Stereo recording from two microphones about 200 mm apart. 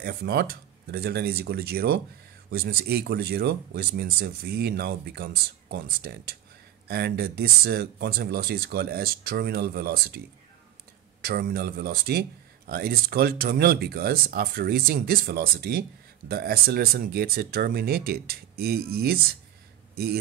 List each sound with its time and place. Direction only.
0.0 s speech: 55° right (ahead or behind)